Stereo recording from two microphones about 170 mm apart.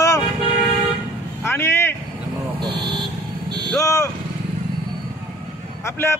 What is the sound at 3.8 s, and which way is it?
Speech, 20° left (ahead or behind).